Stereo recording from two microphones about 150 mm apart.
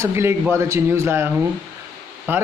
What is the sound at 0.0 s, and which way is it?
A man's voice, 15° right (ahead or behind).